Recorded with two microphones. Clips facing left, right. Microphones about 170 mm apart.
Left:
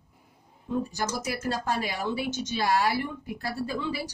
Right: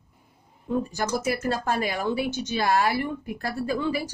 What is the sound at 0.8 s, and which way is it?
Speech, 55° right (ahead or behind).